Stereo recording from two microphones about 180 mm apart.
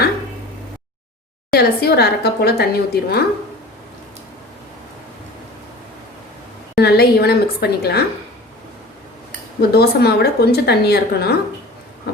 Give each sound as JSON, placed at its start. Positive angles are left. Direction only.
{"t": 1.5, "sound": "speech", "side_deg": 65}
{"t": 6.7, "sound": "speech", "side_deg": 60}
{"t": 9.6, "sound": "speech", "side_deg": 60}